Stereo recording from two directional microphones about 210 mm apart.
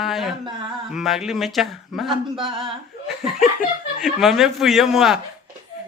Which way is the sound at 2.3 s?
25° right (ahead or behind).